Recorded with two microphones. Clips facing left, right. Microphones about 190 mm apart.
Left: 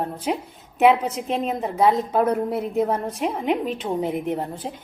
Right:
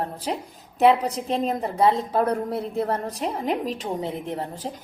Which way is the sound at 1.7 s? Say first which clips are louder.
Left 2 dB; 30° right (ahead or behind).